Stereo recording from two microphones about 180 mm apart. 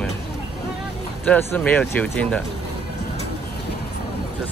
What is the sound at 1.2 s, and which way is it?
Speech, 10° left (ahead or behind).